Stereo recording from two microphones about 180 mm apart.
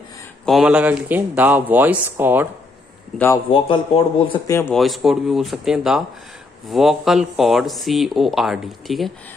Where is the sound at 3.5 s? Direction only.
30° left (ahead or behind).